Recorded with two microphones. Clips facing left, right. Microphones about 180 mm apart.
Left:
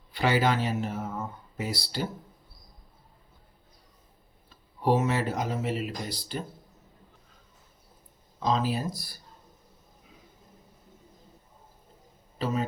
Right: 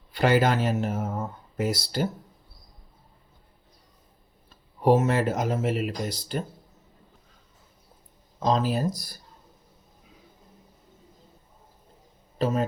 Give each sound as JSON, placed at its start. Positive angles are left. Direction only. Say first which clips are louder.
{"t": 0.1, "sound": "speech", "louder": "right 3 dB", "side_deg": -50}
{"t": 4.9, "sound": "speech", "louder": "right 4 dB", "side_deg": -45}
{"t": 8.4, "sound": "speech", "louder": "right 3 dB", "side_deg": -45}